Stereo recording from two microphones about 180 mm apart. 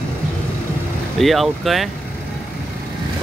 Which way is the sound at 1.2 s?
Centre (ahead or behind).